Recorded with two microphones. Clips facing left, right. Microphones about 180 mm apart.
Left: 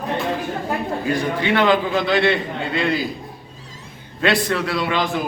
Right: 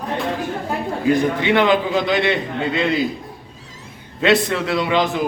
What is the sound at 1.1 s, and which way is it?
A man's voice, 20° right (ahead or behind).